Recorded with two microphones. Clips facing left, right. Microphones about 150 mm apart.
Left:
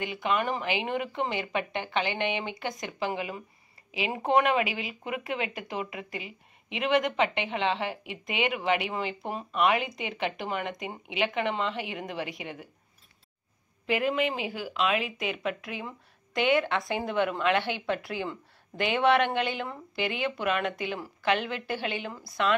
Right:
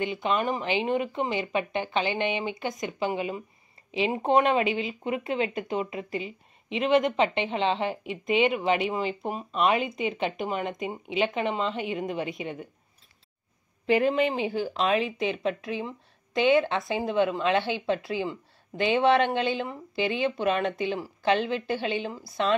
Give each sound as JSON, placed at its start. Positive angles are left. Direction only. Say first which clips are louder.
{"t": 0.0, "sound": "speech", "louder": "right 2 dB", "side_deg": -25}
{"t": 13.8, "sound": "speech", "louder": "right 4 dB", "side_deg": -35}